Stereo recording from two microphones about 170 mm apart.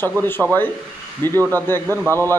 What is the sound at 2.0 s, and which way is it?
Speech, 15° right (ahead or behind).